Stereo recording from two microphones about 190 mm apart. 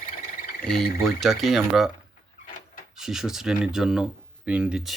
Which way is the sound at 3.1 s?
Centre (ahead or behind).